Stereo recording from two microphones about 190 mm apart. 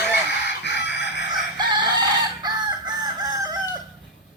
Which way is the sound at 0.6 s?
65° left (ahead or behind).